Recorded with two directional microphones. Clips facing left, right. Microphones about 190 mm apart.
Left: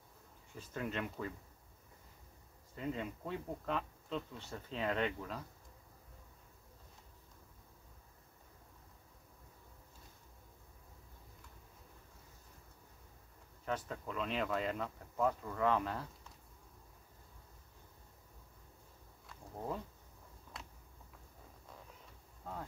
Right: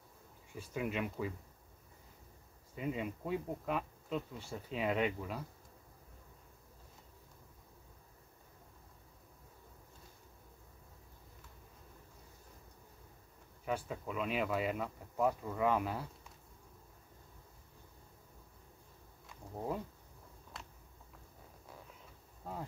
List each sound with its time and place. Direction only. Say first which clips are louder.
0.6 s speech: right 3 dB; 10° right (ahead or behind)
2.7 s speech: right 2 dB; 10° right (ahead or behind)
13.7 s speech: right 2 dB; 10° right (ahead or behind)
19.5 s speech: right 3 dB; 10° right (ahead or behind)
22.4 s bee: right 2 dB; 10° right (ahead or behind)